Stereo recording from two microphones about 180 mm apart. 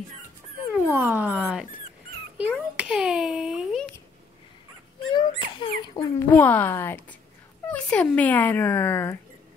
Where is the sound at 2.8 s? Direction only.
5° right (ahead or behind).